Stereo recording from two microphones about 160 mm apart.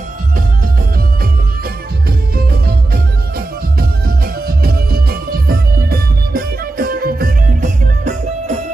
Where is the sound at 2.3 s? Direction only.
70° right (ahead or behind).